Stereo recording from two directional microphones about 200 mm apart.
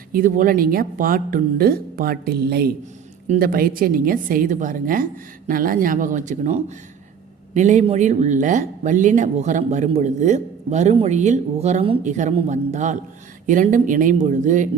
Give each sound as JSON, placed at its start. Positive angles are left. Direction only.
{"t": 0.1, "sound": "speech", "side_deg": -40}